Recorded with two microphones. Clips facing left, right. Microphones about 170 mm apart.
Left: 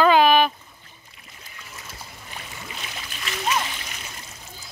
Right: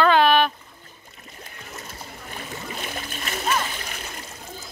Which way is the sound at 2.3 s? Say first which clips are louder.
Right 5 dB; 45° right (ahead or behind).